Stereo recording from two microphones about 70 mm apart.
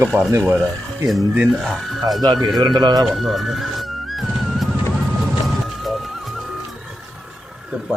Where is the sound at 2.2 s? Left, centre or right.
Right.